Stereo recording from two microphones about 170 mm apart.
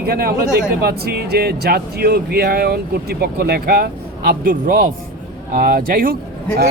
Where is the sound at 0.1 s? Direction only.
65° right (ahead or behind).